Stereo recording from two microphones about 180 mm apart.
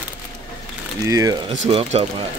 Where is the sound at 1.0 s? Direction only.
20° right (ahead or behind).